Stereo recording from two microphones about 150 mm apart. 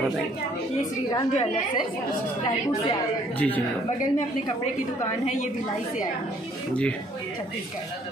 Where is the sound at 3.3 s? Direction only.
10° left (ahead or behind).